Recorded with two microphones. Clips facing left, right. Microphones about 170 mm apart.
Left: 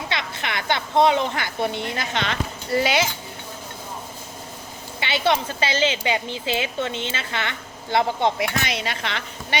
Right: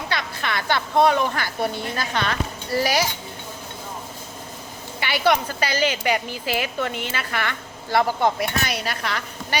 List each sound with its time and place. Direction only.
0.1 s a woman's voice: 20° left (ahead or behind)
4.9 s speech: 25° left (ahead or behind)